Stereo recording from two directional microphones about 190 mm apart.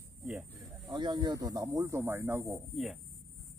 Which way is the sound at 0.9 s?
25° right (ahead or behind).